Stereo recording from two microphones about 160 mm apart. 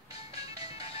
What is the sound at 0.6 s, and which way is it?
Music, 35° left (ahead or behind).